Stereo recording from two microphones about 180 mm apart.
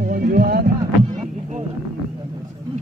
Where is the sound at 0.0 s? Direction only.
60° right (ahead or behind).